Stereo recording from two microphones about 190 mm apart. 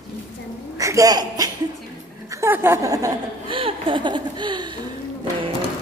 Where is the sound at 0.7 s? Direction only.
15° right (ahead or behind).